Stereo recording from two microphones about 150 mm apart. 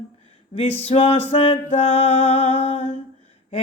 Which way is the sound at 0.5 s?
45° left (ahead or behind).